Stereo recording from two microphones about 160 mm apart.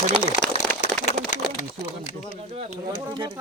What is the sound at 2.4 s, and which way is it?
Speech, 45° right (ahead or behind).